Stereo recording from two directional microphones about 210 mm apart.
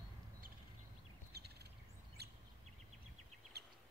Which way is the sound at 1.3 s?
50° right (ahead or behind).